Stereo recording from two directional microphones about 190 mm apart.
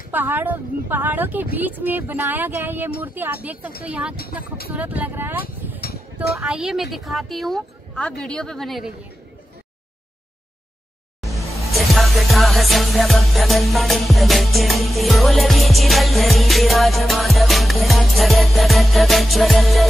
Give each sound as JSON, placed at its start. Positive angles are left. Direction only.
{"t": 0.1, "sound": "a woman's voice", "side_deg": -10}
{"t": 6.4, "sound": "music", "side_deg": -5}
{"t": 11.2, "sound": "music", "side_deg": 0}